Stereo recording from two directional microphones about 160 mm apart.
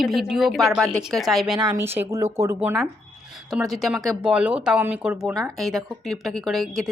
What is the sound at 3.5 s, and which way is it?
A woman's voice, centre (ahead or behind).